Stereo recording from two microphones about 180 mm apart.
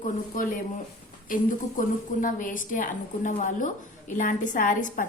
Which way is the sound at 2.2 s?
50° left (ahead or behind).